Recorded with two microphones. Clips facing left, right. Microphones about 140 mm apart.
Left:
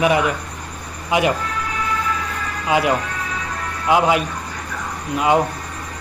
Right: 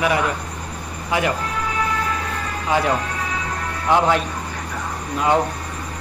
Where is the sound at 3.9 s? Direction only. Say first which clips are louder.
Left 1 dB; 10° left (ahead or behind).